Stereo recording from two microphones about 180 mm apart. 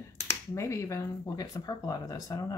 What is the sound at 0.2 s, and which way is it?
Speech, 15° left (ahead or behind).